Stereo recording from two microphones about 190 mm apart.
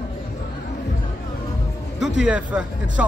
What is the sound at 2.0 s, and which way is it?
Speech, 5° right (ahead or behind).